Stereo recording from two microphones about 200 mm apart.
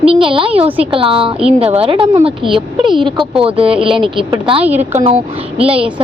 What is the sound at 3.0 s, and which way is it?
Speech, 25° right (ahead or behind).